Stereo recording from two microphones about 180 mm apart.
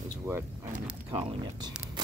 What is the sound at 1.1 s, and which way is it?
Speech, 30° right (ahead or behind).